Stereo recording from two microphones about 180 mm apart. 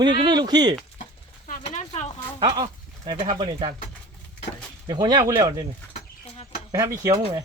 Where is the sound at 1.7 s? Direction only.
40° left (ahead or behind).